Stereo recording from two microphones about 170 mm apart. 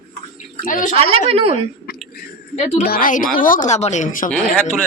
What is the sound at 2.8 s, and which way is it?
Speech, 55° left (ahead or behind).